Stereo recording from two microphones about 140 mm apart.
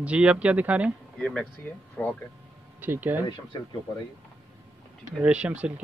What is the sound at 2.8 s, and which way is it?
Speech, 15° right (ahead or behind).